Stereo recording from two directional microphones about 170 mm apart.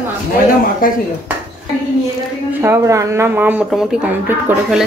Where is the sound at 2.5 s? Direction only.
15° right (ahead or behind).